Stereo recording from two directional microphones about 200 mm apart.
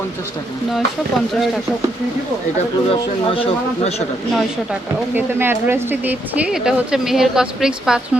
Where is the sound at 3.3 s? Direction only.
30° left (ahead or behind).